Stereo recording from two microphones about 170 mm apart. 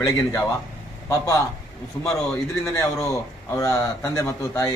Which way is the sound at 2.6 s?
20° left (ahead or behind).